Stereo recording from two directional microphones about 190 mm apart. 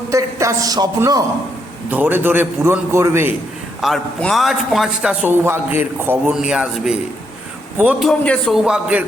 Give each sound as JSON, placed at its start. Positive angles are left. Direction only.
{"t": 0.1, "sound": "a man's voice", "side_deg": -15}
{"t": 1.9, "sound": "a man's voice", "side_deg": -10}
{"t": 3.8, "sound": "a man's voice", "side_deg": 0}